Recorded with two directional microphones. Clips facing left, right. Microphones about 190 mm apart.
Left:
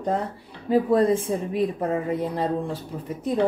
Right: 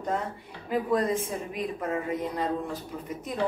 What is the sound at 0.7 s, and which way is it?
Speech, 30° left (ahead or behind).